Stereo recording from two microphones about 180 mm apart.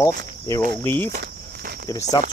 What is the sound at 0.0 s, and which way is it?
Speech, 20° left (ahead or behind).